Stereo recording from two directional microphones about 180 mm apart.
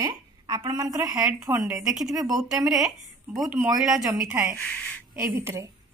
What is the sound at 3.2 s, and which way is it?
Speech, 5° right (ahead or behind).